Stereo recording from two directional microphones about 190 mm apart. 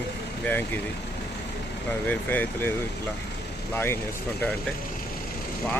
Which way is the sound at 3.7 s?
10° left (ahead or behind).